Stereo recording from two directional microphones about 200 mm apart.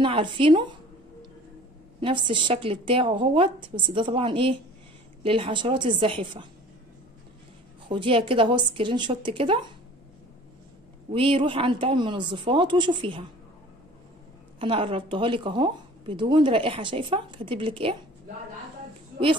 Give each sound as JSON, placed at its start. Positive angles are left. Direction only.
{"t": 0.0, "sound": "speech", "side_deg": -25}
{"t": 2.0, "sound": "speech", "side_deg": -25}
{"t": 7.9, "sound": "speech", "side_deg": -25}
{"t": 11.1, "sound": "speech", "side_deg": -25}
{"t": 14.6, "sound": "speech", "side_deg": -25}